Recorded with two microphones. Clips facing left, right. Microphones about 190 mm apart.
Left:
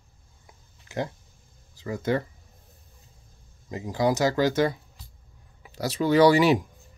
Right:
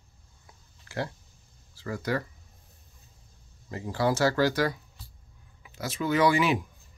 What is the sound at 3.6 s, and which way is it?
Speech, 15° left (ahead or behind).